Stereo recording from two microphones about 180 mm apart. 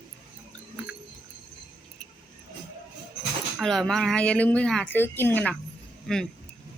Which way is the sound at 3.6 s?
Centre (ahead or behind).